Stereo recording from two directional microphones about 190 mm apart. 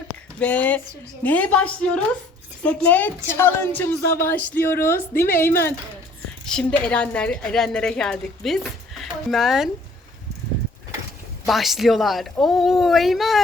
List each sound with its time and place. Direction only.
0.3 s a woman's voice: 10° left (ahead or behind)
4.0 s speech: 55° left (ahead or behind)
4.3 s a woman's voice: 10° left (ahead or behind)
11.4 s a woman's voice: centre (ahead or behind)